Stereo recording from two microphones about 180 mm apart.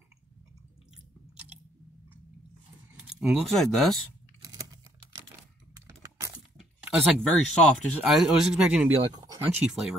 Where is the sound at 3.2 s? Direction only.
Centre (ahead or behind).